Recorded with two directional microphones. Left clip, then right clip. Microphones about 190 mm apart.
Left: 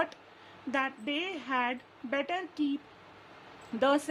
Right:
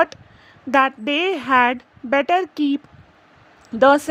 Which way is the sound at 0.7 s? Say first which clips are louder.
Right 15 dB; 40° right (ahead or behind).